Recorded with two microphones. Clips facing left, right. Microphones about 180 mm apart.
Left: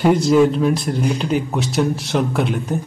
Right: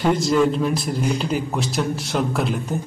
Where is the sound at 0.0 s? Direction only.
5° left (ahead or behind).